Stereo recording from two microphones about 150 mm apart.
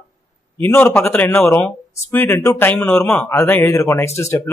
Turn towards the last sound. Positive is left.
turn(degrees=20)  # may be behind; listen again after turning